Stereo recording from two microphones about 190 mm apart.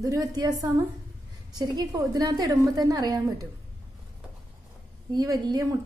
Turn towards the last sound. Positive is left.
turn(degrees=-20)  # may be behind; listen again after turning